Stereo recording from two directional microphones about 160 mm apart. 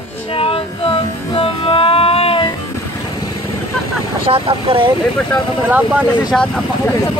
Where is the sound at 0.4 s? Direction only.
35° left (ahead or behind).